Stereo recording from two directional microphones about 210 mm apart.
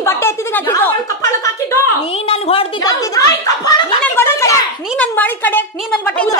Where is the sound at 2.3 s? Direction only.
25° left (ahead or behind); by 6.4 s 5° left (ahead or behind).